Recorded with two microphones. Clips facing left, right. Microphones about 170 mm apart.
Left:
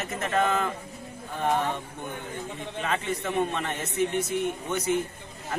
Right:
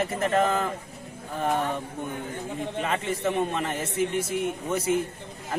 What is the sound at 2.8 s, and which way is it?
Speech, 25° right (ahead or behind).